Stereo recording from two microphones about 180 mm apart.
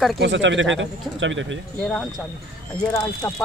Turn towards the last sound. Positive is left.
turn(degrees=20)  # may be behind; listen again after turning